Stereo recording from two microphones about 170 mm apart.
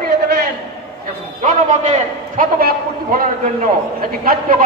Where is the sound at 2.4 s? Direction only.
60° right (ahead or behind).